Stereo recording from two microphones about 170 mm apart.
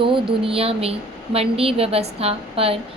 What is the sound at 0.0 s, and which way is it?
A woman's voice, 30° right (ahead or behind).